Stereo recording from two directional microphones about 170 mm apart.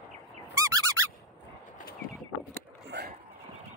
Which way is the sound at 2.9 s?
75° right (ahead or behind).